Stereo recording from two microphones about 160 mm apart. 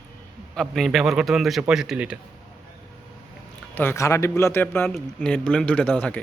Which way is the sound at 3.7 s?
15° left (ahead or behind).